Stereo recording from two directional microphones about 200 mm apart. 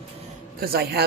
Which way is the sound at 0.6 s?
50° right (ahead or behind).